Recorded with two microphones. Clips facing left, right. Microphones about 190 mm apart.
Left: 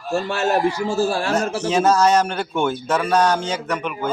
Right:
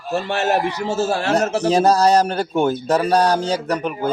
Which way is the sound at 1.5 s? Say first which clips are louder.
Right 1 dB; 35° right (ahead or behind).